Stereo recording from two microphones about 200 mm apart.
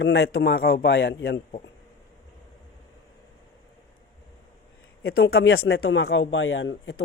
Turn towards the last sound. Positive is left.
turn(degrees=75)  # may be behind; listen again after turning